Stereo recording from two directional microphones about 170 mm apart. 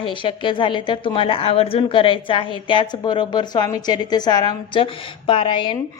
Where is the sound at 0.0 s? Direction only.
30° left (ahead or behind).